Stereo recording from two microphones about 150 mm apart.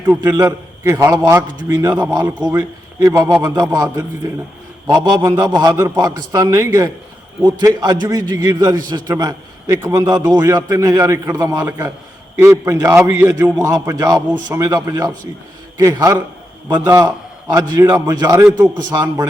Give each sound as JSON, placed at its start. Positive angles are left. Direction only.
{"t": 0.3, "sound": "a man's voice", "side_deg": -20}
{"t": 4.9, "sound": "a man's voice", "side_deg": -25}